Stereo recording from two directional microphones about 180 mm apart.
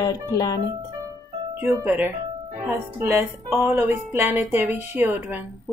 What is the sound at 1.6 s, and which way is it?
Music, 15° right (ahead or behind).